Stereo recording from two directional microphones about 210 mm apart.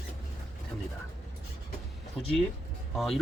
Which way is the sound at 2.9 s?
Centre (ahead or behind).